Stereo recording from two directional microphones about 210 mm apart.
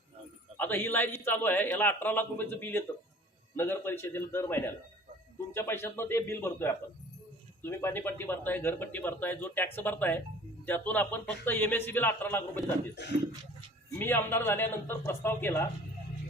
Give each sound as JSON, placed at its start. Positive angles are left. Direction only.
{"t": 0.5, "sound": "speech", "side_deg": 10}
{"t": 13.0, "sound": "speech", "side_deg": 55}
{"t": 14.0, "sound": "speech", "side_deg": 10}